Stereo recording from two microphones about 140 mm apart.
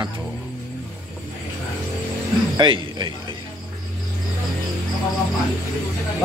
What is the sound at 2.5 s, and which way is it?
Speech, 35° right (ahead or behind).